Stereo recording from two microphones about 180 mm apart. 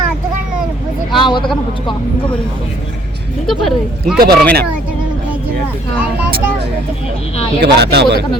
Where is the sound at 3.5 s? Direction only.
Centre (ahead or behind).